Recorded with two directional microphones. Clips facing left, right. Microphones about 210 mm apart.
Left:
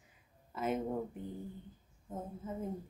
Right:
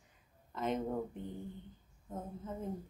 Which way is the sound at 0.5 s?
5° left (ahead or behind).